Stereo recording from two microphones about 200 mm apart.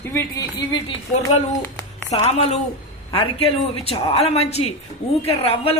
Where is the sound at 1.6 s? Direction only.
15° left (ahead or behind).